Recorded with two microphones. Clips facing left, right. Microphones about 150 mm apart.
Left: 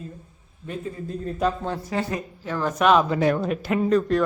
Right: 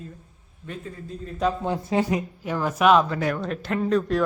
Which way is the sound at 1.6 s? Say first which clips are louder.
Right 3 dB; 20° right (ahead or behind).